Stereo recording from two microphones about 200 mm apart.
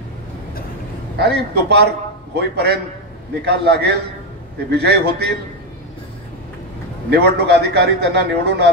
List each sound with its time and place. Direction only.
1.1 s a man's voice: 55° right (ahead or behind)
7.1 s a man's voice: 55° right (ahead or behind)